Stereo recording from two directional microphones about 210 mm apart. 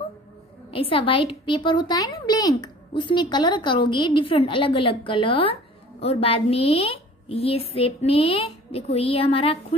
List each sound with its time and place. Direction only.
0.7 s a woman's voice: 25° left (ahead or behind)